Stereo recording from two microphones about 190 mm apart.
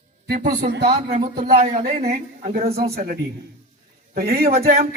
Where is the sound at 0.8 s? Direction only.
35° right (ahead or behind); by 1.7 s 50° right (ahead or behind).